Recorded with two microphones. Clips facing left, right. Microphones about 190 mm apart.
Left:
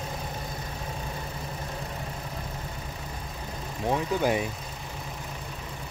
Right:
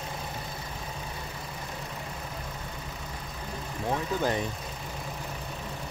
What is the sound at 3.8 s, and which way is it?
Speech, 15° left (ahead or behind).